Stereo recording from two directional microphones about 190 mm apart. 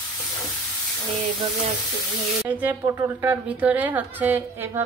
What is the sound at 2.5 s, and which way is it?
A woman's voice, 10° right (ahead or behind).